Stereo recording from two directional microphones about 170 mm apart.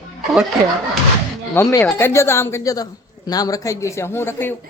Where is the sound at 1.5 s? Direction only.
15° left (ahead or behind).